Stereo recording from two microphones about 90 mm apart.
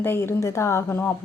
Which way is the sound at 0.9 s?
20° left (ahead or behind).